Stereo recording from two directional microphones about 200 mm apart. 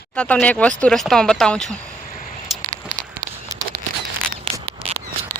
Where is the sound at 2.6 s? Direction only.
40° right (ahead or behind).